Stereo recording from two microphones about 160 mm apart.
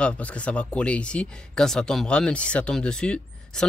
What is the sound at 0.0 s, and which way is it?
Speech, 10° left (ahead or behind).